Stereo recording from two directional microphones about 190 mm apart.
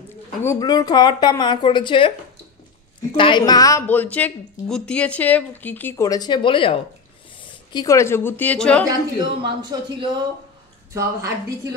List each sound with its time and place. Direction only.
0.4 s a woman's voice: 15° left (ahead or behind)
3.2 s a woman's voice: 25° left (ahead or behind)
7.7 s a woman's voice: 15° left (ahead or behind)
9.4 s a woman's voice: 25° right (ahead or behind)